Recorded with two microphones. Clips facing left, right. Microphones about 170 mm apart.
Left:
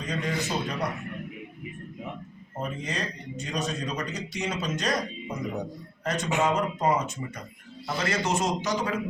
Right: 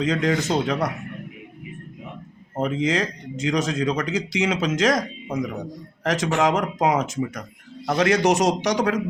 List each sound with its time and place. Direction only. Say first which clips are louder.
0.0 s speech: right 9 dB; 90° right
2.6 s speech: right 10 dB; 85° right
7.9 s a man's voice: right 9 dB; 75° right (ahead or behind)